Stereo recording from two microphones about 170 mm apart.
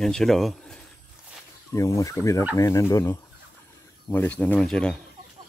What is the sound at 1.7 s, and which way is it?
Speech, 20° left (ahead or behind).